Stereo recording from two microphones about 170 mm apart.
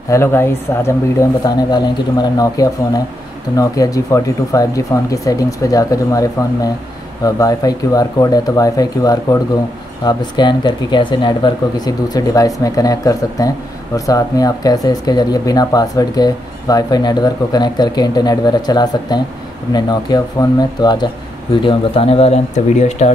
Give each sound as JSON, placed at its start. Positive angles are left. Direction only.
{"t": 0.1, "sound": "a woman's voice", "side_deg": 15}